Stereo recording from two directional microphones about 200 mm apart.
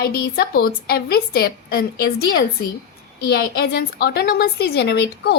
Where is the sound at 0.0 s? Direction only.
45° left (ahead or behind).